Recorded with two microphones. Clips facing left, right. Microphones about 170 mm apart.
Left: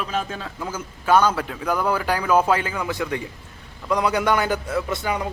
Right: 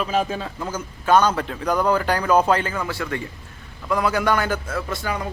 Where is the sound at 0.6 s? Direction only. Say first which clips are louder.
Even; 10° left (ahead or behind).